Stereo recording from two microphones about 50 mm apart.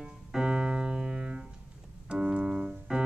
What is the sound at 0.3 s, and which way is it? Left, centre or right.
Piano, centre.